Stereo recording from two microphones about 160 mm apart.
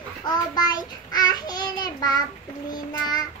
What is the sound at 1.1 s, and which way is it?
Child singing, 25° left (ahead or behind).